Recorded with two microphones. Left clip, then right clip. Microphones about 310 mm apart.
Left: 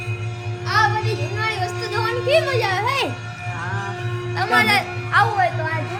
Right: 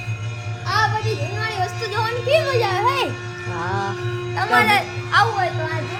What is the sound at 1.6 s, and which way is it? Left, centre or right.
A child's voice, centre.